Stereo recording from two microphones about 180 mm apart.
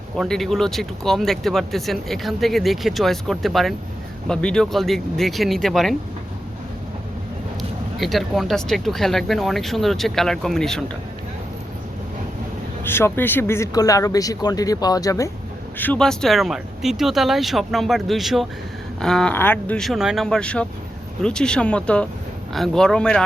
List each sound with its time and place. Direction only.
0.2 s speech: centre (ahead or behind)
7.9 s speech: centre (ahead or behind)
12.8 s speech: 15° left (ahead or behind)
15.8 s speech: 5° left (ahead or behind)